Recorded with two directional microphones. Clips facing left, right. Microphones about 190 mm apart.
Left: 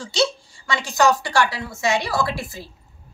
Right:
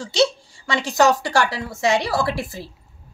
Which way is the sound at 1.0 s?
40° right (ahead or behind).